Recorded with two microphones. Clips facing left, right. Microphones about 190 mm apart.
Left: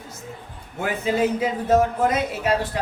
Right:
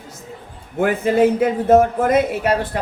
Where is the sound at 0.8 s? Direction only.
55° right (ahead or behind).